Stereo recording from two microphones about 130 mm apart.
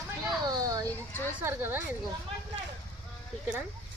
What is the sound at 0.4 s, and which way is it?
Children playing, 30° right (ahead or behind).